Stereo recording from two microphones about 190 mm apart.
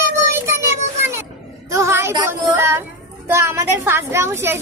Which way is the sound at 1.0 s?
15° right (ahead or behind).